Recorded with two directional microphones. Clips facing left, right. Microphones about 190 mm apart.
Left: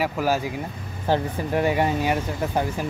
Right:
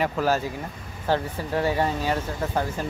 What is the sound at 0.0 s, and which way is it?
Speech, 10° left (ahead or behind).